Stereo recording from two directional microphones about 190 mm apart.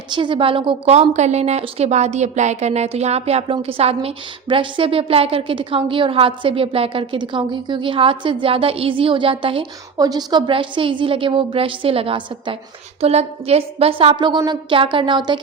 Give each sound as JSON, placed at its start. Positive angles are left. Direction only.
{"t": 0.1, "sound": "a woman's voice", "side_deg": -25}